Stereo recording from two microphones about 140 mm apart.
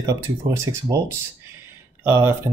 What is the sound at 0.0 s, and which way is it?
Speech, 20° right (ahead or behind).